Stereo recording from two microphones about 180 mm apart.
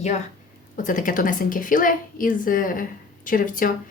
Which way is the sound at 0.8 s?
45° left (ahead or behind).